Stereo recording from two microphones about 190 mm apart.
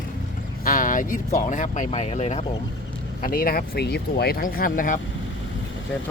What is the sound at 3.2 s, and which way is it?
Speech, 50° left (ahead or behind).